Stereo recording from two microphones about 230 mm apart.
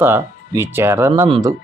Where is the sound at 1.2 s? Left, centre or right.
Right.